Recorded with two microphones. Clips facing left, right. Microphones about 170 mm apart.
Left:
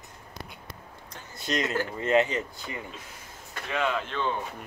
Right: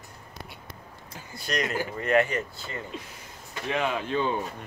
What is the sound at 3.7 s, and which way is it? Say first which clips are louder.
Speech: right 2 dB; 15° right (ahead or behind).